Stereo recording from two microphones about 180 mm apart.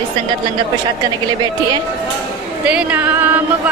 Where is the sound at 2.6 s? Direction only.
5° right (ahead or behind).